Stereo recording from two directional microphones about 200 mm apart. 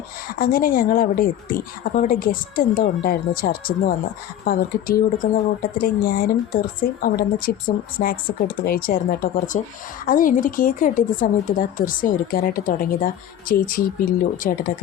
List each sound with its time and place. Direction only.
0.3 s speech: 45° left (ahead or behind)